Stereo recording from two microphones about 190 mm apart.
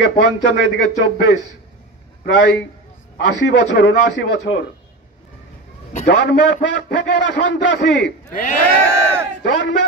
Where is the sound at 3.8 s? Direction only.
70° left (ahead or behind).